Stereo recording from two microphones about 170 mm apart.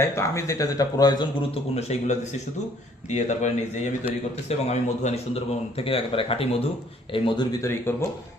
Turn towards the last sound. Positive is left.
turn(degrees=15)  # may be behind; listen again after turning